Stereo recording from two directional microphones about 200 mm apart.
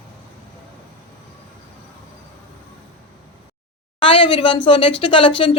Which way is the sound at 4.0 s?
25° left (ahead or behind).